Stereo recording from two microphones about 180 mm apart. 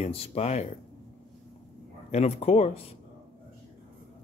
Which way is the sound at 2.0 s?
35° left (ahead or behind).